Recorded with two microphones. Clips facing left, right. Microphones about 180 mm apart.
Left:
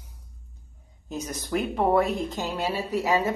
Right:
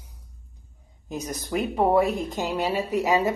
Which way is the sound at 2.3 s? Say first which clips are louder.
Right 3 dB; 15° right (ahead or behind).